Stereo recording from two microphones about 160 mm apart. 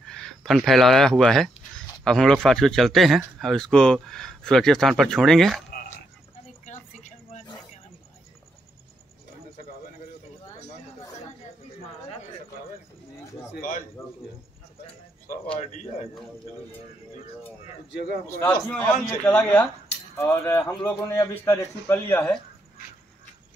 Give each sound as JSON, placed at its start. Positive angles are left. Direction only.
{"t": 0.0, "sound": "speech", "side_deg": 5}
{"t": 6.6, "sound": "a sound", "side_deg": 50}
{"t": 13.5, "sound": "bird", "side_deg": 55}
{"t": 15.6, "sound": "speech", "side_deg": 50}
{"t": 17.9, "sound": "a man's voice", "side_deg": 80}
{"t": 18.4, "sound": "a man's voice", "side_deg": 10}